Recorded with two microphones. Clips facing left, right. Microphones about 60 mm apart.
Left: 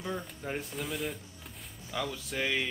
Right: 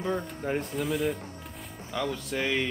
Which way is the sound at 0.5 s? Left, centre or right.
Centre.